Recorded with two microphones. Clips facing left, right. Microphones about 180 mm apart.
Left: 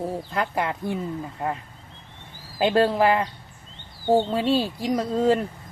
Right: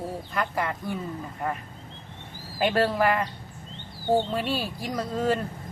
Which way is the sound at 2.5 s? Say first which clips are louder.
Left 4 dB; 25° left (ahead or behind).